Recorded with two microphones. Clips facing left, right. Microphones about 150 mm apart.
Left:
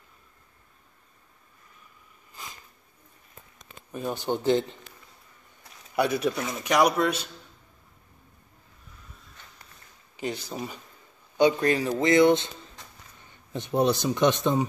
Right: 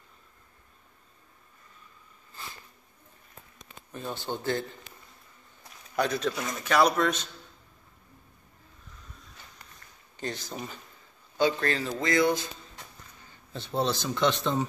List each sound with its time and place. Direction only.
2.4 s a sound: 15° left (ahead or behind)
3.9 s speech: 15° left (ahead or behind)
5.9 s speech: 10° left (ahead or behind)
10.1 s speech: 5° left (ahead or behind)
11.3 s speech: 20° left (ahead or behind)
13.5 s speech: 15° left (ahead or behind)